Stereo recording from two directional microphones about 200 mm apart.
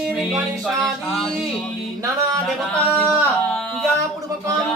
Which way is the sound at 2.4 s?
5° left (ahead or behind).